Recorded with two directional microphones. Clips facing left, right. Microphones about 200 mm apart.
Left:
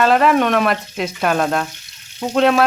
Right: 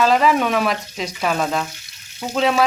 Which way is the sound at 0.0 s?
Centre (ahead or behind).